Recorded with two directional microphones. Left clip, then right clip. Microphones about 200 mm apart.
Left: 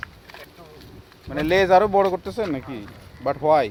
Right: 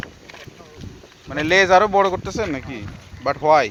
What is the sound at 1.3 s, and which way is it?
Speech, centre (ahead or behind).